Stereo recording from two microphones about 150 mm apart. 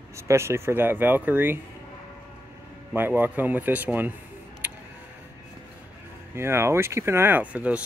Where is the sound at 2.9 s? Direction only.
15° right (ahead or behind).